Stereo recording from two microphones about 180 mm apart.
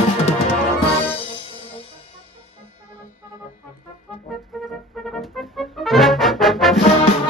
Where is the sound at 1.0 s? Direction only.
30° left (ahead or behind).